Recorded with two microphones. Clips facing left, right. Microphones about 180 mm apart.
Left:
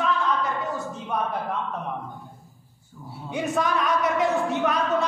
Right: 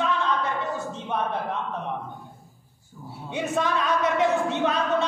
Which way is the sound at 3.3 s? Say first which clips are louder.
Left 1 dB; 25° right (ahead or behind).